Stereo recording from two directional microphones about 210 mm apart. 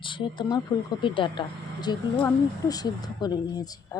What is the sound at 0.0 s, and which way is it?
Speech, 25° left (ahead or behind).